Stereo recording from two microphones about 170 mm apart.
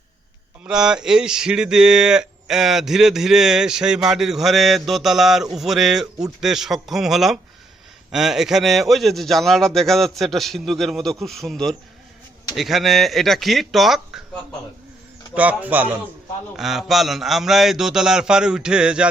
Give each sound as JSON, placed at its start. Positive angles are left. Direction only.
{"t": 0.6, "sound": "speech", "side_deg": -5}
{"t": 15.4, "sound": "speech", "side_deg": -10}